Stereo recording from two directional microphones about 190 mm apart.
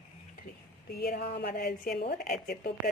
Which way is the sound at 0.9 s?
55° left (ahead or behind).